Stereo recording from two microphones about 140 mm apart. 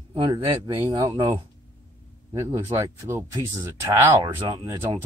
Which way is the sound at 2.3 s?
20° right (ahead or behind).